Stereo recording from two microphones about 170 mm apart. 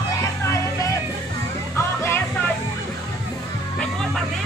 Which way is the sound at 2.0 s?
15° left (ahead or behind).